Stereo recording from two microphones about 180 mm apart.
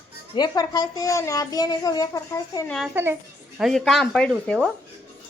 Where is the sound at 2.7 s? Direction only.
Centre (ahead or behind).